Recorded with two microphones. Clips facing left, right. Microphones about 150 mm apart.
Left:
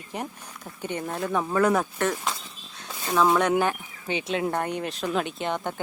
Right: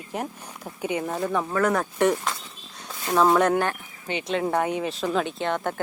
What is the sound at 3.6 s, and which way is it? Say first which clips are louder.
Speech: left 1 dB; 10° left (ahead or behind).